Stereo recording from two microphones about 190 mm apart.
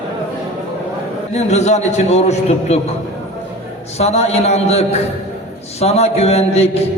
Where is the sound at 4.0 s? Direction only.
35° left (ahead or behind).